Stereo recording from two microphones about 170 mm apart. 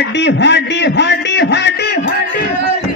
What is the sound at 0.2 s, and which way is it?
A man's voice, 90° left.